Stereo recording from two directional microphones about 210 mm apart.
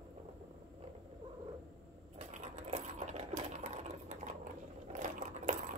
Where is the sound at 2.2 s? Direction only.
35° right (ahead or behind).